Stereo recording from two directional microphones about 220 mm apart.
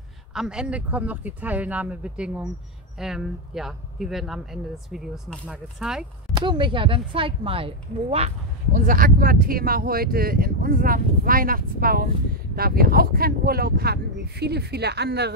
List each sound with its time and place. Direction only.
0.3 s speech: 5° right (ahead or behind)
6.3 s a woman's voice: 20° right (ahead or behind)
8.7 s speech: 40° right (ahead or behind)